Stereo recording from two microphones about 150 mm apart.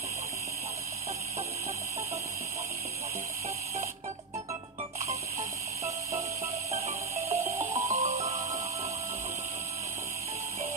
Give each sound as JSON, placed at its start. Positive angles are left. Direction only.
{"t": 6.4, "sound": "music", "side_deg": -45}
{"t": 7.5, "sound": "music", "side_deg": -20}
{"t": 7.9, "sound": "music", "side_deg": -45}